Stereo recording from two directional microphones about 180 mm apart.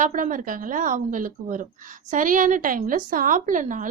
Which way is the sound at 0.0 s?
45° right (ahead or behind).